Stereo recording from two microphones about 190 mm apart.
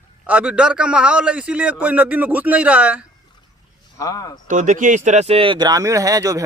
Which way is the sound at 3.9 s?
20° left (ahead or behind).